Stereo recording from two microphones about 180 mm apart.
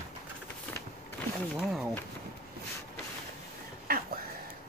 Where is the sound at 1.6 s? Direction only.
Centre (ahead or behind).